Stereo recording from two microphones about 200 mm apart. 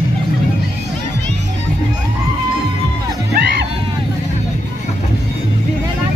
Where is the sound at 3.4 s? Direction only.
55° right (ahead or behind).